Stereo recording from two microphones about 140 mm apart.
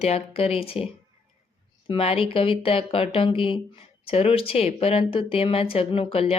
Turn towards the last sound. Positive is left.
turn(degrees=45)  # may be behind; listen again after turning